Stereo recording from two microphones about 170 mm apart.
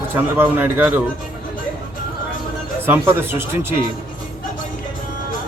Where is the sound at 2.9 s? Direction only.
15° right (ahead or behind).